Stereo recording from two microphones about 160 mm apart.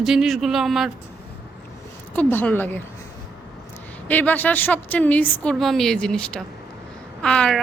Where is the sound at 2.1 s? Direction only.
10° left (ahead or behind).